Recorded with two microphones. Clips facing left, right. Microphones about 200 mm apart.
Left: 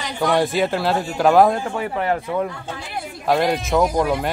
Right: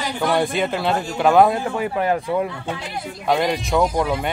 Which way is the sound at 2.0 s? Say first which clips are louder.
Right 1 dB; 15° right (ahead or behind).